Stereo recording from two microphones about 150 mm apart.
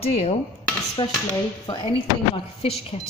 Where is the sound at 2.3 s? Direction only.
40° left (ahead or behind).